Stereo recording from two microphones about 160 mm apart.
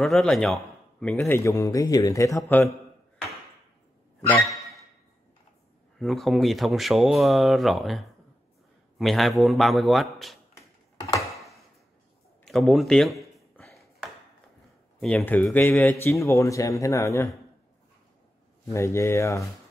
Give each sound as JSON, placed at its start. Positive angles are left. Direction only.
{"t": 0.0, "sound": "speech", "side_deg": 5}
{"t": 1.2, "sound": "speech", "side_deg": 20}
{"t": 5.9, "sound": "speech", "side_deg": 0}
{"t": 10.5, "sound": "a sound", "side_deg": 25}
{"t": 11.3, "sound": "a sound", "side_deg": 0}
{"t": 15.0, "sound": "speech", "side_deg": 5}
{"t": 18.7, "sound": "speech", "side_deg": 20}